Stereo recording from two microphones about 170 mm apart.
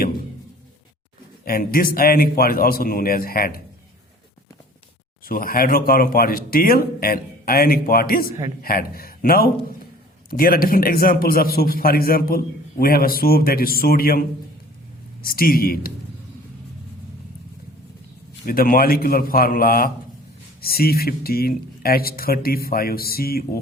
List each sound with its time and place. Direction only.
1.5 s speech: 60° left (ahead or behind)
5.2 s speech: 60° left (ahead or behind)
18.4 s speech: 60° left (ahead or behind)